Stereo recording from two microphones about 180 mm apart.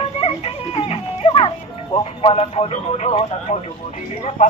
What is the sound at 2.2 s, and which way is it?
Speech, 30° left (ahead or behind).